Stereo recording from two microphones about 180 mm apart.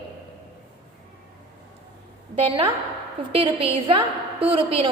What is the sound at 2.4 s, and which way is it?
A woman's voice, 30° right (ahead or behind).